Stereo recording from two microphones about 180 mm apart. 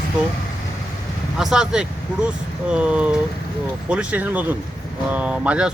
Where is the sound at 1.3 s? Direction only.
5° right (ahead or behind).